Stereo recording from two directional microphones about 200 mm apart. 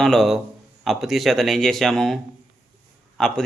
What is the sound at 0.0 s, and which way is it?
Speech, centre (ahead or behind).